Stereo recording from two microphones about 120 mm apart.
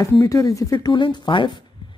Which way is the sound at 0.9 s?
40° left (ahead or behind).